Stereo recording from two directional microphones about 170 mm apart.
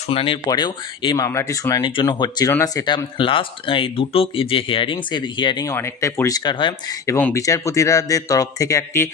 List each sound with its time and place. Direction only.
0.1 s speech: 30° left (ahead or behind)
7.1 s speech: 15° left (ahead or behind)